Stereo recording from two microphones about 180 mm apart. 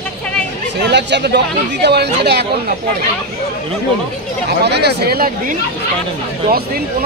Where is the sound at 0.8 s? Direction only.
70° right (ahead or behind).